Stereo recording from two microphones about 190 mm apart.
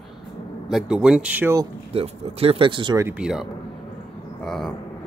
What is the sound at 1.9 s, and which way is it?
Speech, 30° right (ahead or behind).